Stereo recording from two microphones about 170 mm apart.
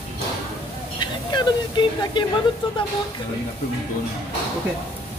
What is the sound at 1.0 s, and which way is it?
Speech, 25° left (ahead or behind).